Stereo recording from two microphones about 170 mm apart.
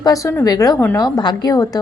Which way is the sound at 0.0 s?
20° left (ahead or behind).